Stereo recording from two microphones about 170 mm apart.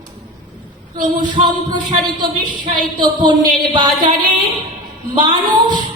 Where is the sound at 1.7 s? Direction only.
25° right (ahead or behind).